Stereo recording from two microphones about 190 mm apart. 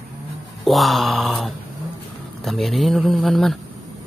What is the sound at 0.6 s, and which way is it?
Speech, centre (ahead or behind).